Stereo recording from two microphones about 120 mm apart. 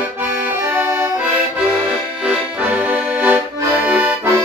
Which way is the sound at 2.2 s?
10° right (ahead or behind).